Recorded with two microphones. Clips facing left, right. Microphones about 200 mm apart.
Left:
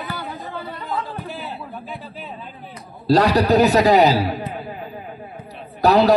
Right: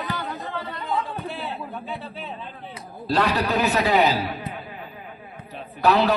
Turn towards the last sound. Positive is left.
turn(degrees=40)  # may be behind; listen again after turning